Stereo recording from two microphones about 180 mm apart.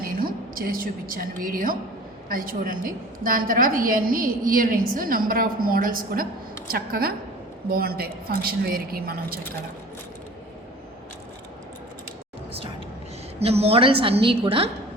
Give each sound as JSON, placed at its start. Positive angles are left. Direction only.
{"t": 0.0, "sound": "a woman's voice", "side_deg": -55}
{"t": 13.4, "sound": "a woman's voice", "side_deg": -35}